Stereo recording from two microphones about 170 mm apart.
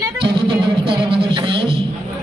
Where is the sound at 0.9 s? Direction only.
30° right (ahead or behind).